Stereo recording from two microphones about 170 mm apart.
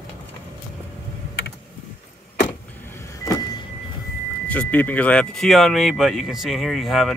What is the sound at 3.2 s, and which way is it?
Vehicle, 20° left (ahead or behind).